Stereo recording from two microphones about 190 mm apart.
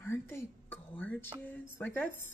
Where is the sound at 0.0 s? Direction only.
10° left (ahead or behind).